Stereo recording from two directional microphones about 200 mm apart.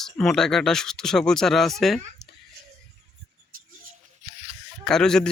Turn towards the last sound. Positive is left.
turn(degrees=5)  # may be behind; listen again after turning